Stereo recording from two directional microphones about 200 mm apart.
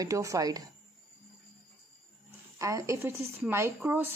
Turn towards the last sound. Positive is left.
turn(degrees=-10)  # may be behind; listen again after turning